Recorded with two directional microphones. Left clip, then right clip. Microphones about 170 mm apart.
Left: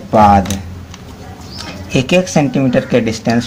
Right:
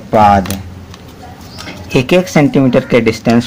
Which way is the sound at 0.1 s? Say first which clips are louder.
Right 1 dB; 30° right (ahead or behind).